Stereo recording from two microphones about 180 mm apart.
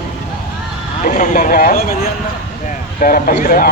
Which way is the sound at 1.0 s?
50° left (ahead or behind).